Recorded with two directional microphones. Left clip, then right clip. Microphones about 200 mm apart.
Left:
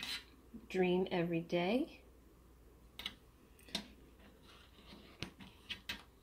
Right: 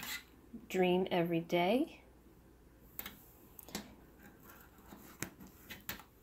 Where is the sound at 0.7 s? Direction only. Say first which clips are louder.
Right 3 dB; 10° right (ahead or behind).